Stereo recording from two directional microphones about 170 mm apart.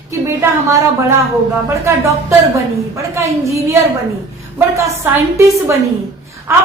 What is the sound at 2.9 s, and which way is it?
Speech, 15° right (ahead or behind).